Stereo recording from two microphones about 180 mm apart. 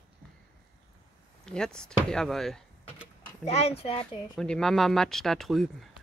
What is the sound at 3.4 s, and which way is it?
Speech, 35° left (ahead or behind).